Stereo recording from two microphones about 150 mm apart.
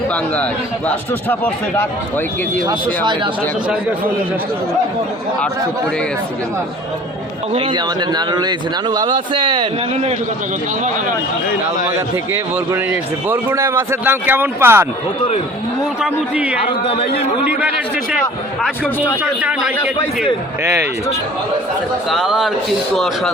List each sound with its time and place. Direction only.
0.9 s speech: 10° left (ahead or behind)
2.6 s speech: 25° right (ahead or behind)
7.5 s a man's voice: 35° right (ahead or behind)
12.1 s a man's voice: 15° right (ahead or behind)
16.0 s a man's voice: 10° right (ahead or behind)
19.2 s a man's voice: 10° right (ahead or behind)
20.6 s a man's voice: 15° right (ahead or behind)
22.1 s speech: centre (ahead or behind)